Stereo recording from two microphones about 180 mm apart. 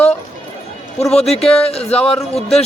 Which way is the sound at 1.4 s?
35° left (ahead or behind).